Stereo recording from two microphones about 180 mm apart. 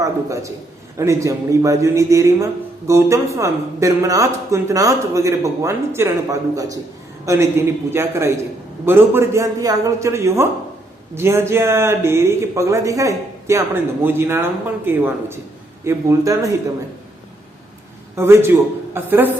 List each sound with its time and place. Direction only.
0.9 s a man's voice: 15° right (ahead or behind)
18.2 s a man's voice: 15° right (ahead or behind)